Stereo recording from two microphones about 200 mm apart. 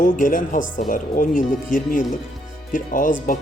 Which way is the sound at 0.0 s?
40° left (ahead or behind).